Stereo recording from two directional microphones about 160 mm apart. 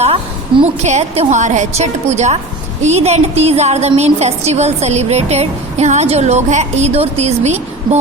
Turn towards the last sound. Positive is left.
turn(degrees=-45)  # may be behind; listen again after turning